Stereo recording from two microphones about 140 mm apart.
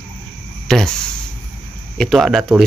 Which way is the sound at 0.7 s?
5° left (ahead or behind).